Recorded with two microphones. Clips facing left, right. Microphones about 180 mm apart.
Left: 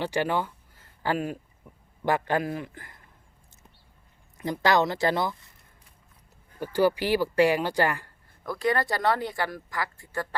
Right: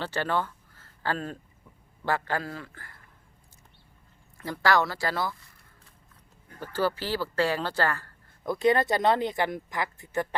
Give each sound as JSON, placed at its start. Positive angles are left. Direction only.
{"t": 0.0, "sound": "speech", "side_deg": 15}
{"t": 4.4, "sound": "speech", "side_deg": 20}
{"t": 6.6, "sound": "speech", "side_deg": 15}
{"t": 8.4, "sound": "speech", "side_deg": -20}